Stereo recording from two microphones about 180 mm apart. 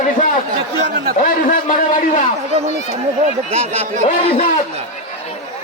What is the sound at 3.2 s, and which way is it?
Speech, 35° right (ahead or behind).